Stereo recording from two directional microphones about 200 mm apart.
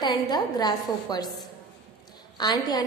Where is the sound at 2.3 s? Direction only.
20° left (ahead or behind).